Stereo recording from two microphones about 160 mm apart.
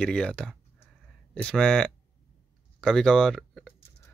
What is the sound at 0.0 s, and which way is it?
Speech, 5° left (ahead or behind).